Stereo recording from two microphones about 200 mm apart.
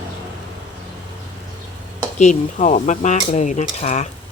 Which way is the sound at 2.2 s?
35° left (ahead or behind).